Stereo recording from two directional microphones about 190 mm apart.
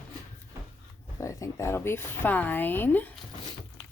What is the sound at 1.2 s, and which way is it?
Speech, 15° left (ahead or behind).